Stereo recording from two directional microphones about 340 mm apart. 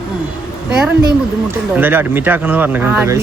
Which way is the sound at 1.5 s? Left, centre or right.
Centre.